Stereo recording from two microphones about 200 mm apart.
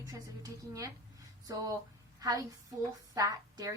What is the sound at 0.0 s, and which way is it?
A woman's voice, 15° right (ahead or behind).